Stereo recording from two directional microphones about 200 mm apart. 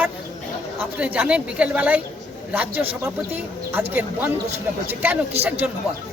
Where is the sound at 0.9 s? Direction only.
5° right (ahead or behind).